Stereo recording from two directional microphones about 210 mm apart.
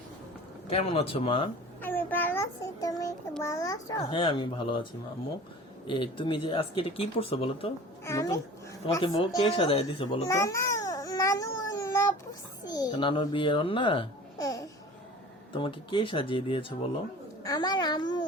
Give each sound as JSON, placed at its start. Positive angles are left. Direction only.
{"t": 0.7, "sound": "a child's voice", "side_deg": 25}
{"t": 1.8, "sound": "a child's voice", "side_deg": 10}
{"t": 5.9, "sound": "a child's voice", "side_deg": 25}
{"t": 8.0, "sound": "a child's voice", "side_deg": 15}
{"t": 10.2, "sound": "babbling", "side_deg": 15}
{"t": 12.6, "sound": "a child's voice", "side_deg": 20}